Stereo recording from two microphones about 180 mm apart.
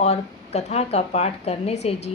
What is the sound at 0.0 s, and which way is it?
A woman's voice, 35° left (ahead or behind).